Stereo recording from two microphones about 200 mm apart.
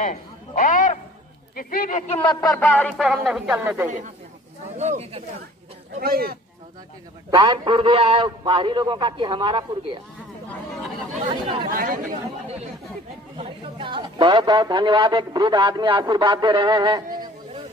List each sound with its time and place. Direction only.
0.0 s a man's voice: 40° left (ahead or behind); by 3.9 s 5° right (ahead or behind)
4.7 s speech: 35° right (ahead or behind)
5.9 s speech: 50° right (ahead or behind)
7.2 s a man's voice: 25° right (ahead or behind)
11.7 s speech: 45° right (ahead or behind)
13.4 s a man's voice: 25° right (ahead or behind)